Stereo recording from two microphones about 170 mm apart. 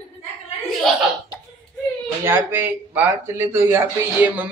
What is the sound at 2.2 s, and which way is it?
A man's voice, 10° right (ahead or behind).